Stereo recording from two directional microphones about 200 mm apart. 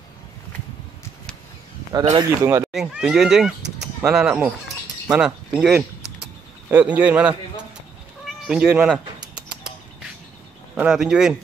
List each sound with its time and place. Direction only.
2.0 s speech: 15° right (ahead or behind)
2.7 s speech: 5° right (ahead or behind)
8.3 s cat: 5° right (ahead or behind)
10.7 s speech: 5° right (ahead or behind)